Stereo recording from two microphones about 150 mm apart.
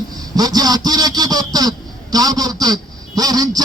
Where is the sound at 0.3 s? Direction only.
25° right (ahead or behind).